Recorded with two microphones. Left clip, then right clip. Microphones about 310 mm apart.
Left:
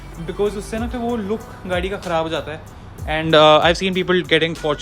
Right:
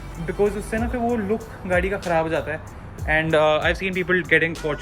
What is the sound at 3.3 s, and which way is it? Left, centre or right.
Speech, left.